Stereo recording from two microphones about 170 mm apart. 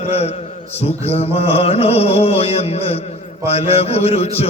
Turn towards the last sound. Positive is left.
turn(degrees=35)  # may be behind; listen again after turning